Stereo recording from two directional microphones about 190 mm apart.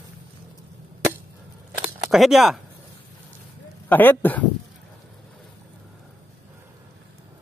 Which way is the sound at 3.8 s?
10° left (ahead or behind).